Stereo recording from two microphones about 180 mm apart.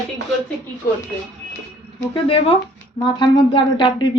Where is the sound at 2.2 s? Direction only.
30° left (ahead or behind).